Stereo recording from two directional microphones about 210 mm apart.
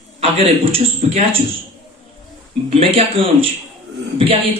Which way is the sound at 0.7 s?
25° right (ahead or behind).